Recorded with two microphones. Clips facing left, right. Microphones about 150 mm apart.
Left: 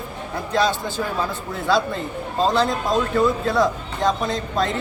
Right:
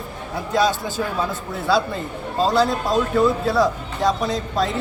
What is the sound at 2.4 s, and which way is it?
A man's voice, 5° right (ahead or behind).